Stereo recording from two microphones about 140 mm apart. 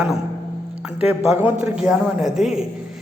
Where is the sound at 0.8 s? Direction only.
10° right (ahead or behind).